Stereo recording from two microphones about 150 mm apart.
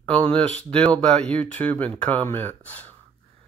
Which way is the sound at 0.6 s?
10° left (ahead or behind).